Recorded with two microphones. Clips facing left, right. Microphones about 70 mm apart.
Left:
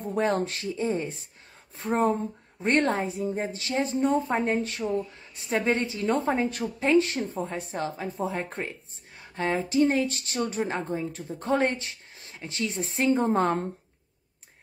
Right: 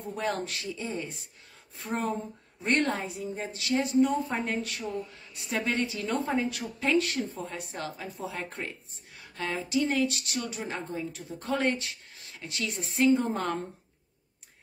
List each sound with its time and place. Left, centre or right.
0.0 s a woman's voice: left